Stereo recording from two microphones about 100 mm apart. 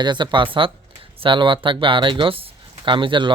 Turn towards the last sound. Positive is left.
turn(degrees=-55)  # may be behind; listen again after turning